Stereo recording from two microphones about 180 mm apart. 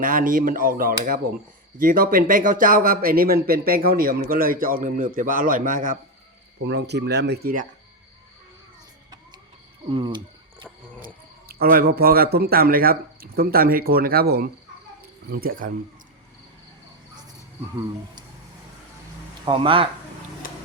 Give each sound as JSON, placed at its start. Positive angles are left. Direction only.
{"t": 0.0, "sound": "speech", "side_deg": -50}
{"t": 6.7, "sound": "speech", "side_deg": -70}
{"t": 9.9, "sound": "speech", "side_deg": -25}
{"t": 11.0, "sound": "speech", "side_deg": -55}
{"t": 19.5, "sound": "speech", "side_deg": -30}